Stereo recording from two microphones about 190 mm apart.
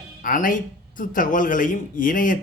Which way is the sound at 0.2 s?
45° left (ahead or behind).